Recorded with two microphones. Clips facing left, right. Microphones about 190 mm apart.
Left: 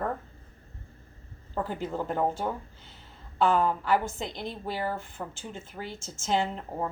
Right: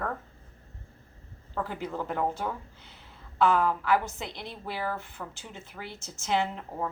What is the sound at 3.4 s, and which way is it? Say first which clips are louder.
A woman's voice: even; 40° left (ahead or behind).